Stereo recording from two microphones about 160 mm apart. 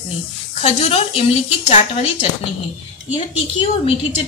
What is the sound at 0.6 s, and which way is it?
A woman's voice, 40° left (ahead or behind).